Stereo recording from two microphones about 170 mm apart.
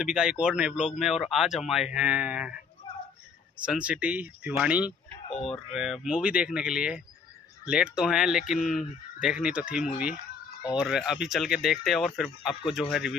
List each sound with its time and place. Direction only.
0.0 s speech: 5° right (ahead or behind)
3.6 s speech: 5° right (ahead or behind)